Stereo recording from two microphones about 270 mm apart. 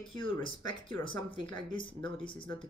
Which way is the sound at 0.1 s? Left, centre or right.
Centre.